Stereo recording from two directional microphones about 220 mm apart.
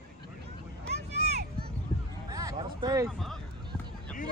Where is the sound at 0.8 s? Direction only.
45° right (ahead or behind).